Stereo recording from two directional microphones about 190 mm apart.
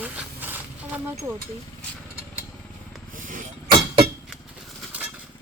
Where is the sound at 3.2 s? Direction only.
45° right (ahead or behind).